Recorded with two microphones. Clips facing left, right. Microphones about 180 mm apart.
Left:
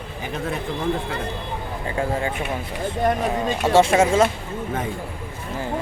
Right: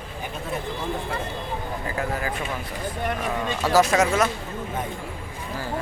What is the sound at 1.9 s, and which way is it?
Speech, 25° left (ahead or behind).